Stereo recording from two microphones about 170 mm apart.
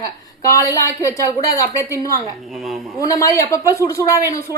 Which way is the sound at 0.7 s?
20° left (ahead or behind).